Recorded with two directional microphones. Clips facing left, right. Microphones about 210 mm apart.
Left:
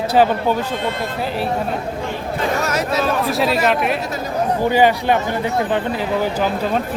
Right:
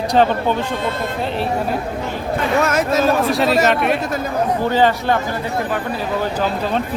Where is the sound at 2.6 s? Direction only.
50° right (ahead or behind).